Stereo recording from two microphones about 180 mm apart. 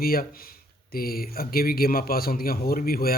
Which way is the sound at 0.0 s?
55° left (ahead or behind).